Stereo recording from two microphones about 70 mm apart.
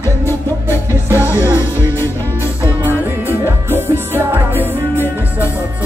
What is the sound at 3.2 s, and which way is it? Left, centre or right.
Music, right.